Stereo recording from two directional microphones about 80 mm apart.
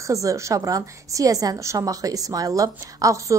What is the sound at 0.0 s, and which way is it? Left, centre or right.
A woman's voice, right.